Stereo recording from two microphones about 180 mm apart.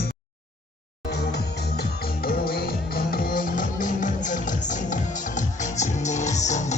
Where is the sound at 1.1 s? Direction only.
65° left (ahead or behind); by 6.7 s 40° left (ahead or behind).